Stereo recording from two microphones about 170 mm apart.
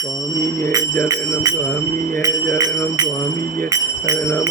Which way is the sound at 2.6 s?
25° right (ahead or behind).